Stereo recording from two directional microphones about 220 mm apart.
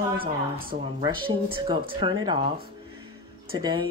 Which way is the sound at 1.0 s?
20° right (ahead or behind).